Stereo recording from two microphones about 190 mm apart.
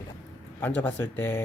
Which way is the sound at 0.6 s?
10° left (ahead or behind).